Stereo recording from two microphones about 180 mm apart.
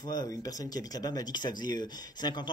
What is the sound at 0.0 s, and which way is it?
Speech, 20° left (ahead or behind).